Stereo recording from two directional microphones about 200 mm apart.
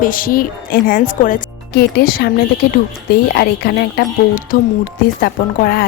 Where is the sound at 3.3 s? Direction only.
55° left (ahead or behind).